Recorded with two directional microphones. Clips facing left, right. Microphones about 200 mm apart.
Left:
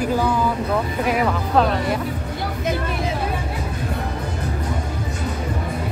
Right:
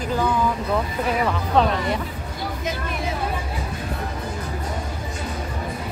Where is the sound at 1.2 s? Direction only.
5° left (ahead or behind).